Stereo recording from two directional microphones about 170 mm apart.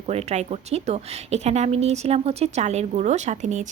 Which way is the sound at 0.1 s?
40° right (ahead or behind).